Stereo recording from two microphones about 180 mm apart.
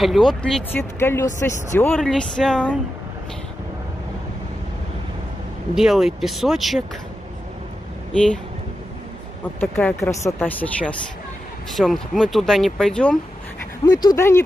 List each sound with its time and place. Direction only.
0.0 s speech: centre (ahead or behind)
5.8 s speech: centre (ahead or behind)
8.1 s speech: 5° left (ahead or behind)
9.6 s speech: 5° left (ahead or behind)
13.8 s speech: 20° left (ahead or behind)